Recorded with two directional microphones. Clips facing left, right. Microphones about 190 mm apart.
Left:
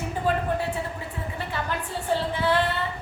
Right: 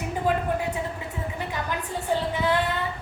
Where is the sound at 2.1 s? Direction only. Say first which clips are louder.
Even; 15° right (ahead or behind).